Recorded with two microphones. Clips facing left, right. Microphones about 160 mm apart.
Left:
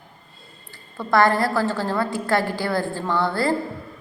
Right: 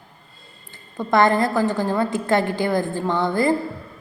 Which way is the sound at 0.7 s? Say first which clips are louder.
Right 1 dB; 20° right (ahead or behind).